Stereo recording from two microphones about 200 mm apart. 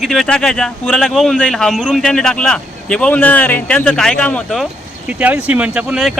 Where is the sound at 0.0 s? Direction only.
Centre (ahead or behind).